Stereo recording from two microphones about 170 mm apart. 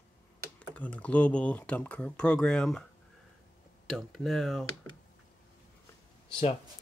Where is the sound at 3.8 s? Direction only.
Centre (ahead or behind).